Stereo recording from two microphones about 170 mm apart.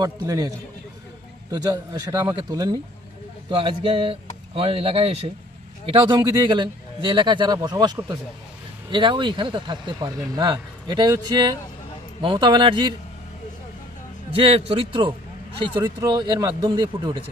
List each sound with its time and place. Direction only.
1.5 s speech: 25° right (ahead or behind)
14.3 s a man's voice: 35° right (ahead or behind)